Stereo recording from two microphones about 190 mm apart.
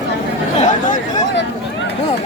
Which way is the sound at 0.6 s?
40° left (ahead or behind).